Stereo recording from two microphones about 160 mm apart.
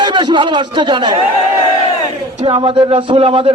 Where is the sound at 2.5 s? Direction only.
30° right (ahead or behind).